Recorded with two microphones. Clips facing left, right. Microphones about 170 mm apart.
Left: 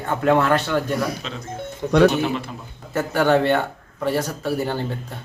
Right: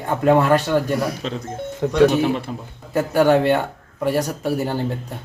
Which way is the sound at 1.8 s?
65° right (ahead or behind).